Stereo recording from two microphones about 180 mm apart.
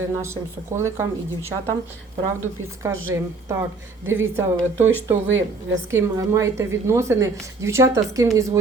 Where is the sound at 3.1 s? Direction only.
15° right (ahead or behind).